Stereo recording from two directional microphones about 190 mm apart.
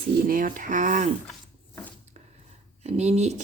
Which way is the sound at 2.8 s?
35° right (ahead or behind).